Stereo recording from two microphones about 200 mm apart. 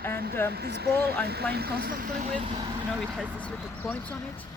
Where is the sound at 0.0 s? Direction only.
10° left (ahead or behind).